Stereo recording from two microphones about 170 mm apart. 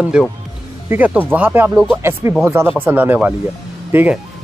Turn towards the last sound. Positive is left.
turn(degrees=-10)  # may be behind; listen again after turning